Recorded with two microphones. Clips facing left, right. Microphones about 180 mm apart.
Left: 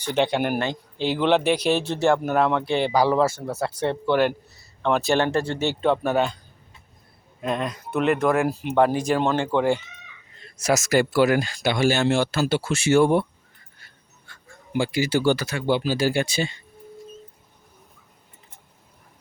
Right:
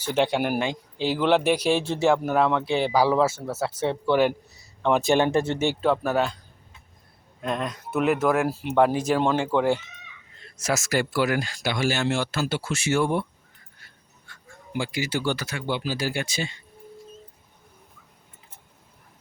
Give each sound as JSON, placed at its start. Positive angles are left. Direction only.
{"t": 0.0, "sound": "speech", "side_deg": -5}
{"t": 5.8, "sound": "speech", "side_deg": -5}
{"t": 7.4, "sound": "speech", "side_deg": 0}
{"t": 10.8, "sound": "speech", "side_deg": 25}
{"t": 14.8, "sound": "speech", "side_deg": 30}